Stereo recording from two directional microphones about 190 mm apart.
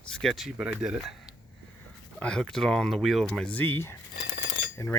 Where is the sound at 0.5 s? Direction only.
5° right (ahead or behind).